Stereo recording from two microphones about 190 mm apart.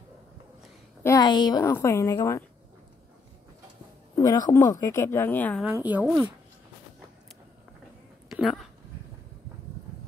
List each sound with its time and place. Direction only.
1.0 s a woman's voice: 20° left (ahead or behind)
4.2 s speech: 20° left (ahead or behind)
5.6 s a woman's voice: 10° right (ahead or behind)
8.3 s a sound: centre (ahead or behind)